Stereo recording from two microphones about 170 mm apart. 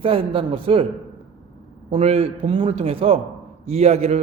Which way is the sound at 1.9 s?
35° right (ahead or behind).